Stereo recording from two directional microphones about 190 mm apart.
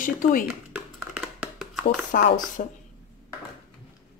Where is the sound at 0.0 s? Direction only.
45° left (ahead or behind).